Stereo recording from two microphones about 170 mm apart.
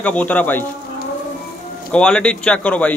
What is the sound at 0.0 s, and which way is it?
Speech, 10° left (ahead or behind).